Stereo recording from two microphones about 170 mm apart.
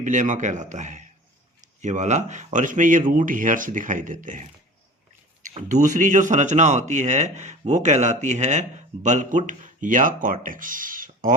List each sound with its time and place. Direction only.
0.0 s speech: 50° right (ahead or behind)